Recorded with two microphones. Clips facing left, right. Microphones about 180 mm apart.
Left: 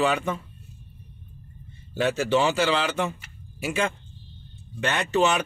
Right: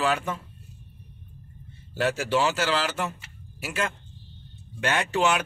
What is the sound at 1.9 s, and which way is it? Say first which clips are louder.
A man's voice: left 2 dB; 5° right (ahead or behind).